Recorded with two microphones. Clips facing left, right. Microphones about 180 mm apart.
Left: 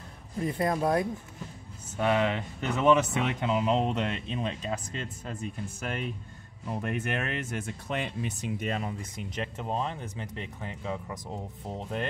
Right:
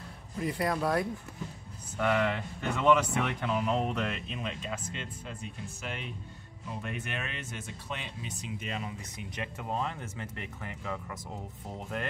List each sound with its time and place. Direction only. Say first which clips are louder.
0.4 s speech: left 3 dB; 25° left (ahead or behind); by 9.2 s 45° left (ahead or behind)
9.4 s speech: left 2 dB; 25° left (ahead or behind)